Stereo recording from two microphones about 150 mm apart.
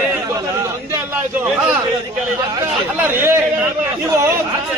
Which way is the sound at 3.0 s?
15° right (ahead or behind).